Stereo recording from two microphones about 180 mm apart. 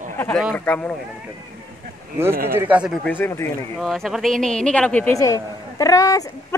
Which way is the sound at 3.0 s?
10° left (ahead or behind).